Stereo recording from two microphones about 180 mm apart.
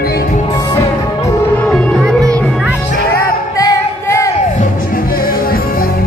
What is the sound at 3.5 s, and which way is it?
Music, 20° left (ahead or behind).